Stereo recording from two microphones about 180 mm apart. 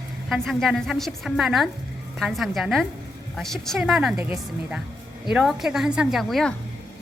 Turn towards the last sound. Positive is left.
turn(degrees=0)  # may be behind; listen again after turning